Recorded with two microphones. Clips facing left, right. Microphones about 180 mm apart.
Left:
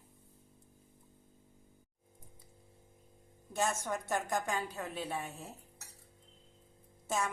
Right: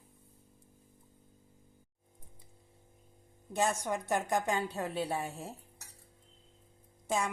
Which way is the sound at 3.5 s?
15° right (ahead or behind).